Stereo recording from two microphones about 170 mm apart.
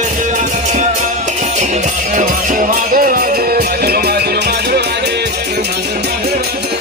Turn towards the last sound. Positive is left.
turn(degrees=-70)  # may be behind; listen again after turning